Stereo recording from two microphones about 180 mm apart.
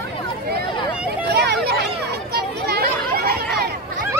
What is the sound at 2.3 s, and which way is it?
Chatter, 60° right (ahead or behind).